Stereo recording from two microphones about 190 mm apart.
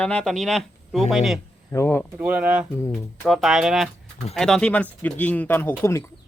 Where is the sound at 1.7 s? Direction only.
15° left (ahead or behind).